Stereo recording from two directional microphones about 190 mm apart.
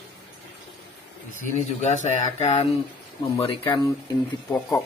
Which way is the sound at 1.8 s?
40° left (ahead or behind).